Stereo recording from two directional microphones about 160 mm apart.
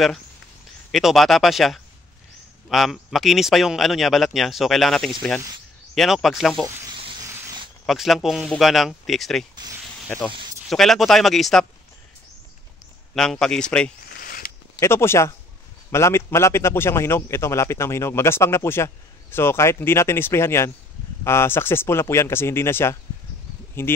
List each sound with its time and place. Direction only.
0.9 s speech: centre (ahead or behind)
7.8 s speech: centre (ahead or behind)
13.1 s speech: centre (ahead or behind)
14.1 s a sound: 70° left (ahead or behind)
14.8 s a man's voice: 15° left (ahead or behind)